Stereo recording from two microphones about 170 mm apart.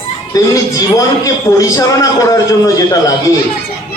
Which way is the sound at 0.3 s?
20° left (ahead or behind).